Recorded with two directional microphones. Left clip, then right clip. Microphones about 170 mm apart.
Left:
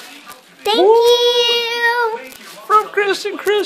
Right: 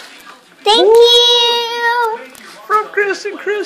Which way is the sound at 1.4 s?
5° right (ahead or behind).